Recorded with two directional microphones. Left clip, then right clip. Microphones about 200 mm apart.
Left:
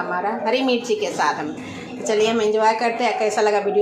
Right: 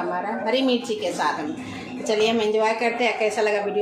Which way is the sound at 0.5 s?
20° left (ahead or behind).